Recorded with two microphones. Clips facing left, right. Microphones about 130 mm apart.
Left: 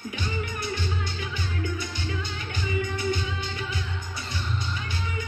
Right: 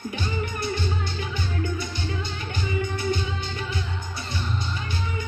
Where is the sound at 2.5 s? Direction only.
30° right (ahead or behind).